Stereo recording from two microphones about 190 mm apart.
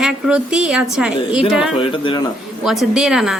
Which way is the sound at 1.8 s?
25° left (ahead or behind).